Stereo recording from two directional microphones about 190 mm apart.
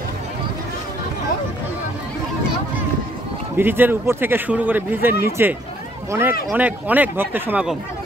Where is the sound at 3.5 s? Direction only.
10° right (ahead or behind).